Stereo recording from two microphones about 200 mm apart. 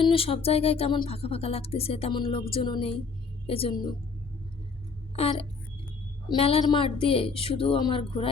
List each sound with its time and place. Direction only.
0.0 s a woman's voice: 25° left (ahead or behind)
5.1 s speech: 30° left (ahead or behind)